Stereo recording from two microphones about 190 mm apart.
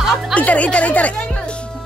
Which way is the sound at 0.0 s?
Centre (ahead or behind).